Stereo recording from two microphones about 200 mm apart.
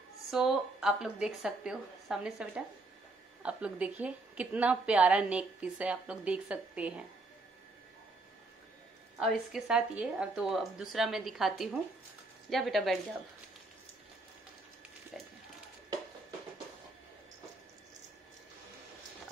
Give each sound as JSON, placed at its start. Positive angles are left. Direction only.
{"t": 0.3, "sound": "a woman's voice", "side_deg": 0}
{"t": 9.5, "sound": "a woman's voice", "side_deg": -5}
{"t": 15.1, "sound": "a sound", "side_deg": 0}